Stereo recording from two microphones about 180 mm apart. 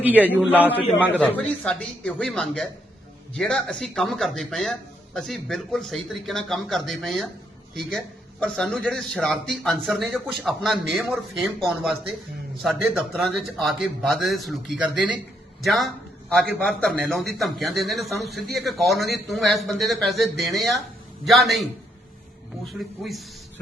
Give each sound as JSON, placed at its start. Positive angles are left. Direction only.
{"t": 0.0, "sound": "a man's voice", "side_deg": -10}
{"t": 1.0, "sound": "a man's voice", "side_deg": 10}